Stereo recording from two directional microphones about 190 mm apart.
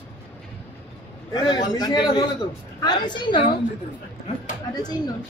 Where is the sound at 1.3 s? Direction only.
20° left (ahead or behind).